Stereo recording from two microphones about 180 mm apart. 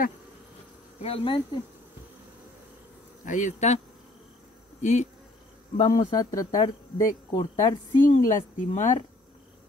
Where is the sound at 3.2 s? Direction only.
45° left (ahead or behind).